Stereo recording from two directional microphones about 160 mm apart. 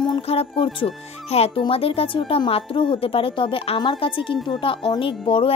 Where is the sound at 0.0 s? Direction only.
35° left (ahead or behind).